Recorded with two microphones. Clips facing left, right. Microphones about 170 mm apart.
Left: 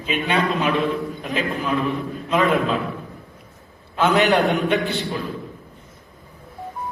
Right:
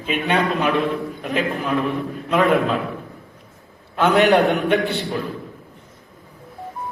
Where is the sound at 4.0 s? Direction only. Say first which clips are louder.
Right 2 dB; 60° right (ahead or behind).